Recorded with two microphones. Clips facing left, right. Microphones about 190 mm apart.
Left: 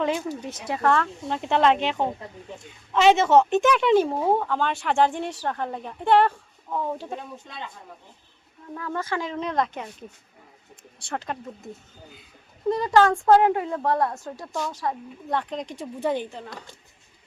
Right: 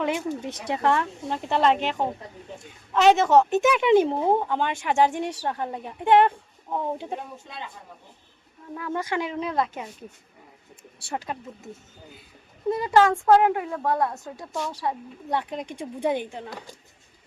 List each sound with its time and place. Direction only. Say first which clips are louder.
0.0 s a woman's voice: even; 20° right (ahead or behind)
1.5 s a woman's voice: left 1 dB; 5° right (ahead or behind)
2.9 s a woman's voice: even; centre (ahead or behind); by 7.2 s 20° right (ahead or behind)
8.7 s a woman's voice: right 1 dB; 15° right (ahead or behind)
11.1 s a woman's voice: left 1 dB; 10° right (ahead or behind)
14.8 s a woman's voice: even; 15° right (ahead or behind)